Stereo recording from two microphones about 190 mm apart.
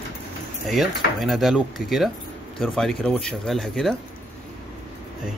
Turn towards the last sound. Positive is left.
turn(degrees=0)  # may be behind; listen again after turning